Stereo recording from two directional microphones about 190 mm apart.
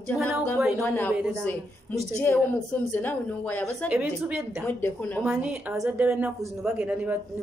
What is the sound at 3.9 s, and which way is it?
Speech, 5° right (ahead or behind).